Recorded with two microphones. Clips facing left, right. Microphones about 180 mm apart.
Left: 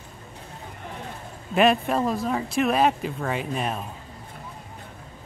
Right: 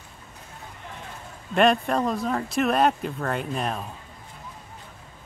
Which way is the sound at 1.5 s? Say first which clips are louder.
Even; 5° left (ahead or behind).